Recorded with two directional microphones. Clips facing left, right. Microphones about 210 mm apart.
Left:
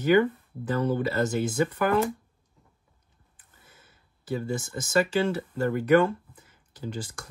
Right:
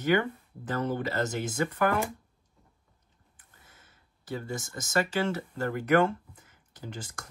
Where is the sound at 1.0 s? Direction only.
30° left (ahead or behind).